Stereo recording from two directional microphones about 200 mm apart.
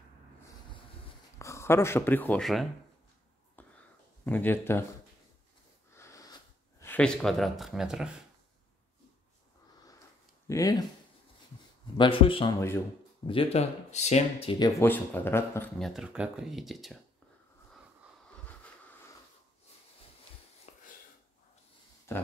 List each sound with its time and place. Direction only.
1.4 s speech: 15° left (ahead or behind)
3.6 s whispering: 10° left (ahead or behind)
4.3 s speech: 10° left (ahead or behind)
5.9 s wheeze: 15° left (ahead or behind)
6.8 s speech: 5° left (ahead or behind)
10.5 s speech: 20° left (ahead or behind)
12.0 s speech: 25° left (ahead or behind)
12.5 s speech: 10° left (ahead or behind)
13.3 s speech: 30° left (ahead or behind)
14.8 s speech: 10° left (ahead or behind)
15.8 s speech: centre (ahead or behind)
20.7 s a sound: 35° left (ahead or behind)